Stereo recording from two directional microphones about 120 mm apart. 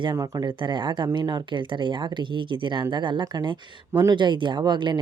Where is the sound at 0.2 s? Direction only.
40° right (ahead or behind).